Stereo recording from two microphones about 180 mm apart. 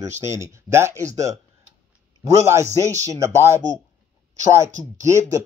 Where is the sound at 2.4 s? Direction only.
15° right (ahead or behind).